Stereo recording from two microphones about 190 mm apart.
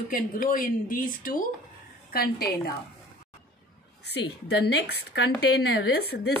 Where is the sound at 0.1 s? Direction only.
45° left (ahead or behind).